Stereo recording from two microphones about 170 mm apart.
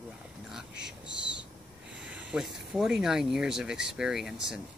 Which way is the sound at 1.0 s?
90° right.